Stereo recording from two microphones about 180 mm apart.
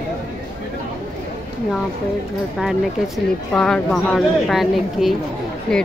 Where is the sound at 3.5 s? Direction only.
5° left (ahead or behind).